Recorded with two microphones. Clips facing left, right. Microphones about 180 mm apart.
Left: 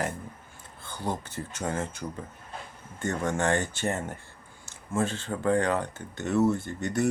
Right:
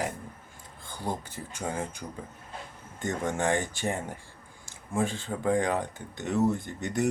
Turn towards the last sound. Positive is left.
turn(degrees=-15)  # may be behind; listen again after turning